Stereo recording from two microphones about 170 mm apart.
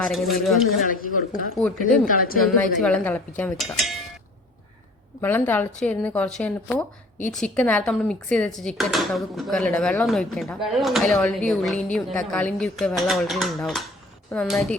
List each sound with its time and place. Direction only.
0.0 s speech: centre (ahead or behind)
1.9 s speech: 55° left (ahead or behind)
2.4 s speech: 5° left (ahead or behind)
3.6 s speech: centre (ahead or behind)
5.2 s speech: 10° left (ahead or behind)